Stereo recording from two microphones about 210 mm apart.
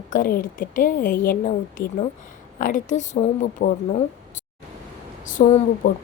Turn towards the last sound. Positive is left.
turn(degrees=40)  # may be behind; listen again after turning